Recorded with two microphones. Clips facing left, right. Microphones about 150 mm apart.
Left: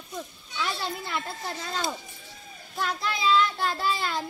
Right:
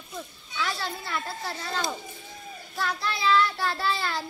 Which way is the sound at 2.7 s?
20° left (ahead or behind).